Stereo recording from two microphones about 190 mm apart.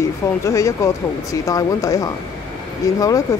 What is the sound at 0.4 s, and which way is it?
Speech, 15° left (ahead or behind).